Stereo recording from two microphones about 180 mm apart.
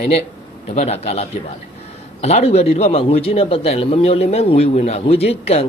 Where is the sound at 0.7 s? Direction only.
35° left (ahead or behind).